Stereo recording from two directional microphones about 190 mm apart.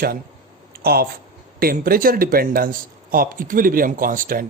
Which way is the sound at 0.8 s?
55° right (ahead or behind).